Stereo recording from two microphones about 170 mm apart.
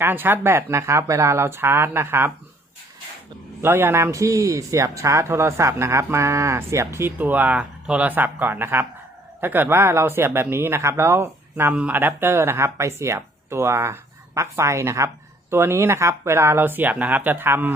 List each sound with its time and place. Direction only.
0.0 s speech: 10° right (ahead or behind)
3.6 s speech: 15° right (ahead or behind)